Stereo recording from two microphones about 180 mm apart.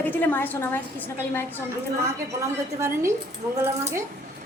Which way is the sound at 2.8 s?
15° right (ahead or behind).